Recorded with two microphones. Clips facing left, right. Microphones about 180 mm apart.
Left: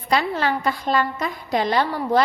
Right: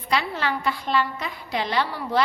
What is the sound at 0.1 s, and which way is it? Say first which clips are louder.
A woman's voice: left 4 dB; 45° left (ahead or behind).